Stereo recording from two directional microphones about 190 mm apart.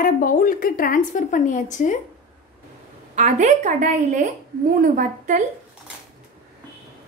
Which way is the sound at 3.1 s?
40° right (ahead or behind).